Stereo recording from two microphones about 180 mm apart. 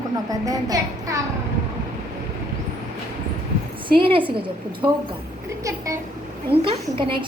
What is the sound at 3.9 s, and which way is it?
Speech, 30° right (ahead or behind).